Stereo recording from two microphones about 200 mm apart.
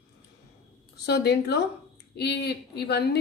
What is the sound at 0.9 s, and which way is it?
A woman's voice, 55° left (ahead or behind).